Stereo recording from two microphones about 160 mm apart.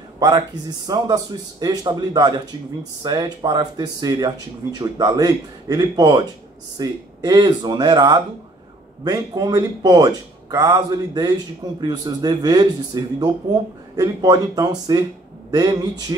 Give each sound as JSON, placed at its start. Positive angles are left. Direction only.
{"t": 0.8, "sound": "speech", "side_deg": -25}